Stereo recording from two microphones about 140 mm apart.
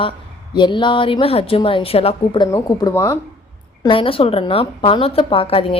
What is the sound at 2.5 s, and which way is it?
Speech, 20° left (ahead or behind).